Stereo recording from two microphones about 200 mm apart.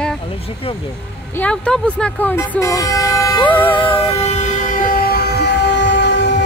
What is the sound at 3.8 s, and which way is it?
Vehicle, 30° left (ahead or behind).